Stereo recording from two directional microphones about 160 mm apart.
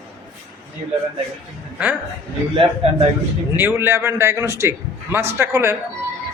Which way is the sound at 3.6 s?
15° right (ahead or behind).